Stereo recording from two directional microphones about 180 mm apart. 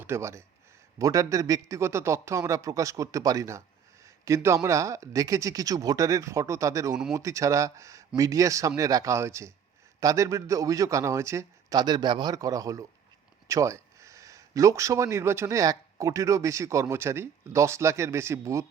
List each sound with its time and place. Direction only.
0.0 s a man's voice: 15° right (ahead or behind)